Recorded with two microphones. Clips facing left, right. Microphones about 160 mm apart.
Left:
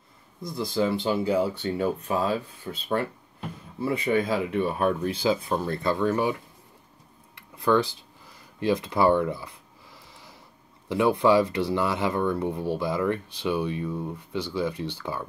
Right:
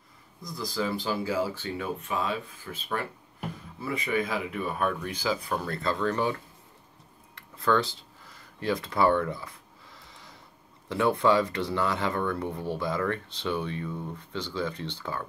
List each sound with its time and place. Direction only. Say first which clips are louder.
0.5 s speech: left 5 dB; 25° left (ahead or behind)
7.3 s a sound: left 3 dB; 15° left (ahead or behind)
10.9 s speech: left 3 dB; 15° left (ahead or behind)